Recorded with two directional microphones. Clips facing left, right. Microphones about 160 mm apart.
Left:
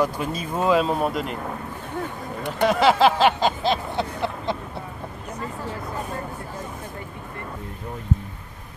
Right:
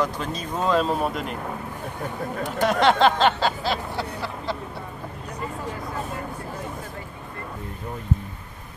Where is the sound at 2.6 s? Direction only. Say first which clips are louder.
Left 1 dB; 5° left (ahead or behind); by 4.6 s 20° left (ahead or behind).